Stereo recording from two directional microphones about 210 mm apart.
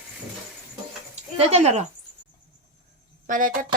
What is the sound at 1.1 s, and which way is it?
Speech, 30° right (ahead or behind).